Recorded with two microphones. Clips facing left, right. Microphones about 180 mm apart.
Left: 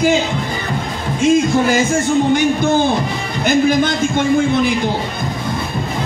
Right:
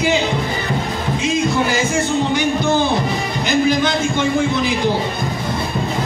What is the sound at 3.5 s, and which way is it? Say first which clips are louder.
A man's voice: left 3 dB; 50° left (ahead or behind).